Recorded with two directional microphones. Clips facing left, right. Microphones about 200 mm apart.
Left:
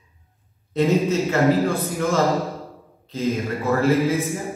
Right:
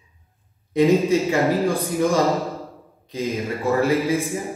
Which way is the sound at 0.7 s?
15° right (ahead or behind).